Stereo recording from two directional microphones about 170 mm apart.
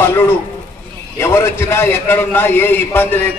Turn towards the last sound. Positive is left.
turn(degrees=10)  # may be behind; listen again after turning